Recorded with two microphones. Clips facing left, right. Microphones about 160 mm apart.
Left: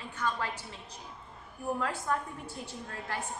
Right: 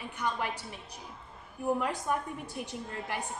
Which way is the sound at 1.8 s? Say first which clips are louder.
Right 1 dB; 15° right (ahead or behind).